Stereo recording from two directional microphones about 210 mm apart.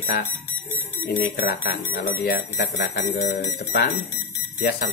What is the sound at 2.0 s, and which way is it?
Speech, 50° left (ahead or behind).